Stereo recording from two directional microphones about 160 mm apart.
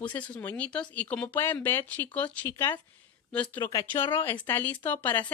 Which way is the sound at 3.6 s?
20° left (ahead or behind).